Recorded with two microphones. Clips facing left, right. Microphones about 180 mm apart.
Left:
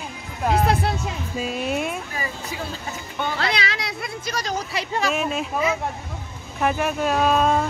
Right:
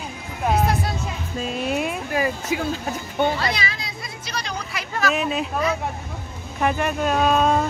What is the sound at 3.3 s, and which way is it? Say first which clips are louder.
Speech: left 1 dB; 70° left (ahead or behind).